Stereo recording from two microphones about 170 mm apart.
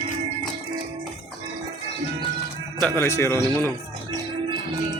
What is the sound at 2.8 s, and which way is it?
Speech, 15° left (ahead or behind).